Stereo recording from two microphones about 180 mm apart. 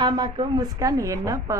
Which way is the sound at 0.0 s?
25° right (ahead or behind).